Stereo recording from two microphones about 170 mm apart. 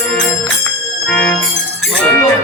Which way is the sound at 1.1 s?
5° left (ahead or behind).